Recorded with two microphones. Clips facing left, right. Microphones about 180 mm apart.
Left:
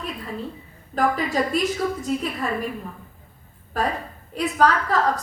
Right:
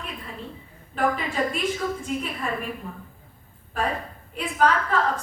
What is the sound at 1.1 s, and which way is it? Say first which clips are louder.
Speech: left 4 dB; 40° left (ahead or behind).